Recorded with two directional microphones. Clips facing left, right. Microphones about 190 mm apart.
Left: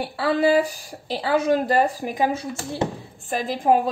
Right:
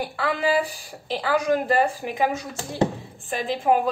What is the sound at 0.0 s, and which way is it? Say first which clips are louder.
Speech: left 4 dB; 35° left (ahead or behind).